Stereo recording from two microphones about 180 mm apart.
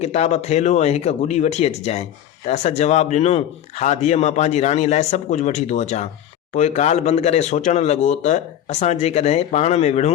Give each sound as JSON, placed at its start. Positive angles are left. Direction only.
{"t": 0.0, "sound": "a man's voice", "side_deg": 35}